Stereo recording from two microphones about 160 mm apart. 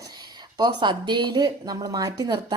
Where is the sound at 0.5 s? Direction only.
25° right (ahead or behind).